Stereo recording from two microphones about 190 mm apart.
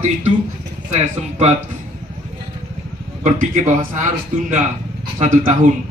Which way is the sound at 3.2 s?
40° right (ahead or behind).